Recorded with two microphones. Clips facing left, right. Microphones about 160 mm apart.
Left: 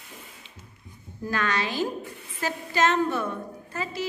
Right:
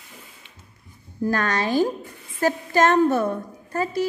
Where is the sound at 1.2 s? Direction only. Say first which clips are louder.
Right 5 dB; 45° right (ahead or behind).